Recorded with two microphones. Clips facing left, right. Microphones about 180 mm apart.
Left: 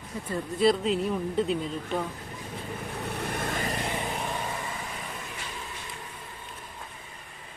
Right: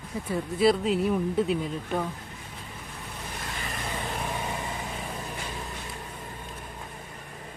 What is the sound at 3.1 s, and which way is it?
Vehicle, 65° left (ahead or behind).